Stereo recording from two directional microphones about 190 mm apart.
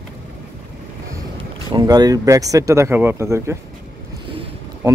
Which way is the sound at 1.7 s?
20° right (ahead or behind).